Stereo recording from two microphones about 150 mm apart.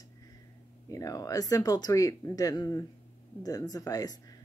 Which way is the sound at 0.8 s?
25° left (ahead or behind).